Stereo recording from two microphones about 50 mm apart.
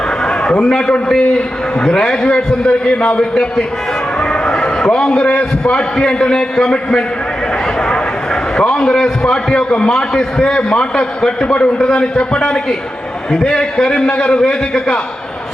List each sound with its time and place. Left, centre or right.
0.6 s a man's voice: centre
8.5 s a man's voice: centre